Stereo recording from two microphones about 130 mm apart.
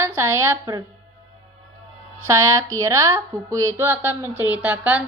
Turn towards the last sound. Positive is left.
turn(degrees=-10)  # may be behind; listen again after turning